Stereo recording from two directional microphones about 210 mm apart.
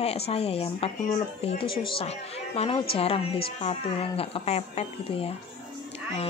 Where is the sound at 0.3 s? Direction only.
30° left (ahead or behind).